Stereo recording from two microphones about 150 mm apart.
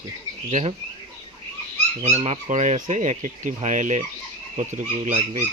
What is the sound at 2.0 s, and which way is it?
Speech, 45° right (ahead or behind).